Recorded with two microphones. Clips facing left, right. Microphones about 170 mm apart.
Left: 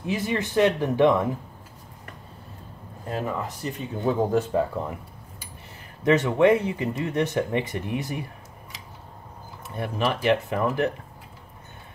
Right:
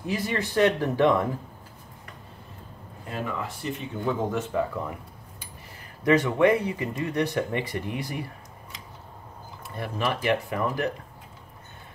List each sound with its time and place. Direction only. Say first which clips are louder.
0.0 s speech: left 2 dB; 20° left (ahead or behind)
3.1 s speech: left 3 dB; 40° left (ahead or behind)
6.0 s speech: left 2 dB; 25° left (ahead or behind)
9.8 s speech: left 2 dB; 25° left (ahead or behind)